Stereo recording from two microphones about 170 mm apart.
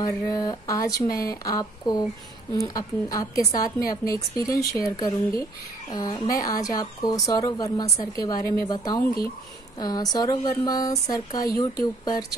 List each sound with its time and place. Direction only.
0.0 s speech: 20° left (ahead or behind)